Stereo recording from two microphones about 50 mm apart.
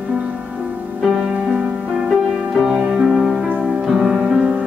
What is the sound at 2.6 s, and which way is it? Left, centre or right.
Music, centre.